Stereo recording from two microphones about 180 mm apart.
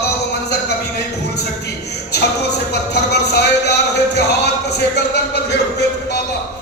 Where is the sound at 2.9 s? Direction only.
70° left (ahead or behind).